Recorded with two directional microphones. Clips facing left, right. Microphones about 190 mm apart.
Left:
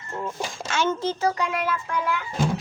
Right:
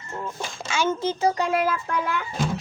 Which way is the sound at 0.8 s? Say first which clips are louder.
Right 1 dB; 10° right (ahead or behind).